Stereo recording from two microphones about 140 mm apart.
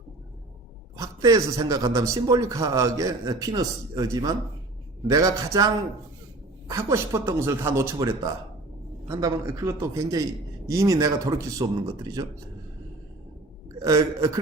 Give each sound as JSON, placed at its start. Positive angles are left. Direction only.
{"t": 0.9, "sound": "a man's voice", "side_deg": -25}
{"t": 13.8, "sound": "a man's voice", "side_deg": -25}